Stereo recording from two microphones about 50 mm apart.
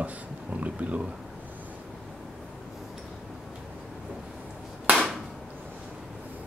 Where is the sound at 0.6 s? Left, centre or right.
Right.